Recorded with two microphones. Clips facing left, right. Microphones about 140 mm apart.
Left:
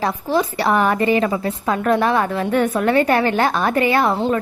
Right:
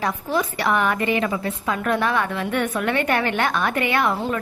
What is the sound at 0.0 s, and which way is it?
A woman's voice, 30° left (ahead or behind).